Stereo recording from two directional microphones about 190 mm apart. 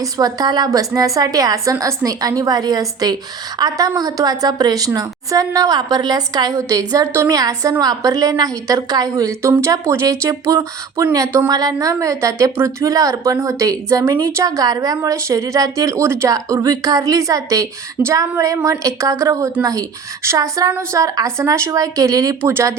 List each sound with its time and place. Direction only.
0.0 s a woman's voice: 20° right (ahead or behind)